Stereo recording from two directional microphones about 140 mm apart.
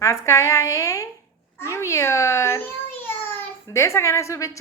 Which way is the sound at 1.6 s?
20° left (ahead or behind).